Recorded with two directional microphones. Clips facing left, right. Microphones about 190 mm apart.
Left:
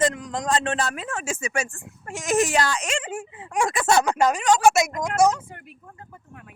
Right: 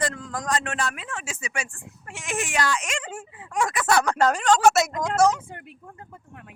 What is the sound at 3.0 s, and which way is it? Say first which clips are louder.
Speech: left 4 dB; 25° left (ahead or behind).